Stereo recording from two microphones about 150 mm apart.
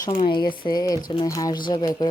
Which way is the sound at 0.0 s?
30° left (ahead or behind).